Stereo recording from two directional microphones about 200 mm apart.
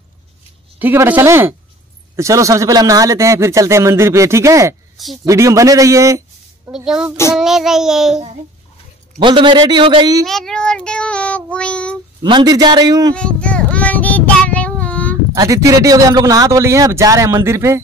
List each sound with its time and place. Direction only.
0.7 s a man's voice: 10° right (ahead or behind)
4.9 s speech: centre (ahead or behind)
5.2 s a man's voice: 15° right (ahead or behind)
6.7 s child singing: 5° right (ahead or behind)
9.2 s a man's voice: 25° right (ahead or behind)
10.2 s child singing: centre (ahead or behind)
12.2 s a man's voice: 20° right (ahead or behind)
13.1 s child singing: 5° left (ahead or behind)
15.3 s a man's voice: 15° right (ahead or behind)